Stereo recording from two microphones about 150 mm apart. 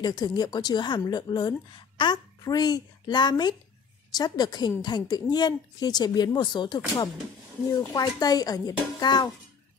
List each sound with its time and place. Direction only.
0.0 s a woman's voice: 25° left (ahead or behind)